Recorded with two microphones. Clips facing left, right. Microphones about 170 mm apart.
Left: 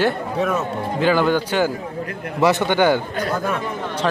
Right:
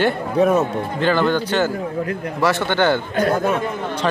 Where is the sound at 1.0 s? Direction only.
5° left (ahead or behind).